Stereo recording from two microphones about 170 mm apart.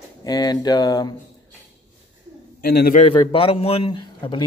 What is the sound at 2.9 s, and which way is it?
A man's voice, 35° left (ahead or behind).